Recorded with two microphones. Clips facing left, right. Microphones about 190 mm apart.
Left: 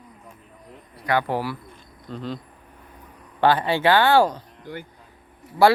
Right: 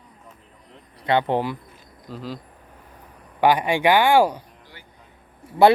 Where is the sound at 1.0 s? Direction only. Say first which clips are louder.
Right 3 dB; 25° right (ahead or behind).